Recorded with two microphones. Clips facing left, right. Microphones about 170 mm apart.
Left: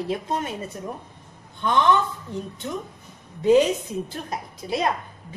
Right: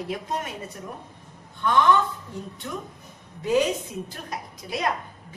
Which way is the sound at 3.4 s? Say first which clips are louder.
Left 5 dB; 25° left (ahead or behind).